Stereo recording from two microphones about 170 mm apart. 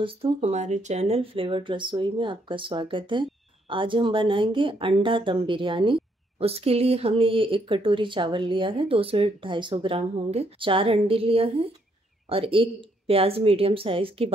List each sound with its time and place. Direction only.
0.0 s speech: 35° right (ahead or behind)